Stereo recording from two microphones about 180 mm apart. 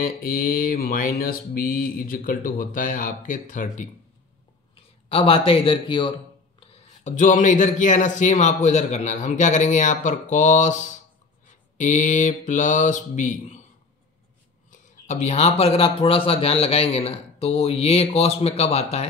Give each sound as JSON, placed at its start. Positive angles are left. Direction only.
{"t": 0.0, "sound": "a man's voice", "side_deg": 50}
{"t": 5.1, "sound": "a man's voice", "side_deg": 30}
{"t": 6.7, "sound": "a man's voice", "side_deg": 40}
{"t": 14.7, "sound": "a man's voice", "side_deg": 40}